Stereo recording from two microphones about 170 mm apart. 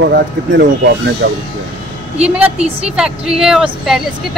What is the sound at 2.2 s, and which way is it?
A woman's voice, 5° right (ahead or behind).